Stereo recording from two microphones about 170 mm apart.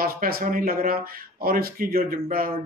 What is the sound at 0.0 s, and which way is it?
A man's voice, 60° right (ahead or behind).